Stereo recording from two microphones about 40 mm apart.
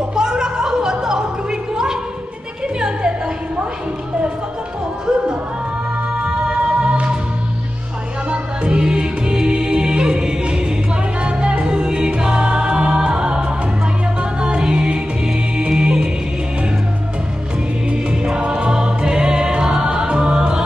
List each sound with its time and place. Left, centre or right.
0.1 s music: centre
6.2 s music: right
8.3 s music: right
11.6 s music: centre
17.9 s choir: right